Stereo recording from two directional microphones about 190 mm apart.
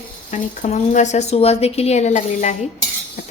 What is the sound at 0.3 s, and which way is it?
A woman's voice, 35° left (ahead or behind).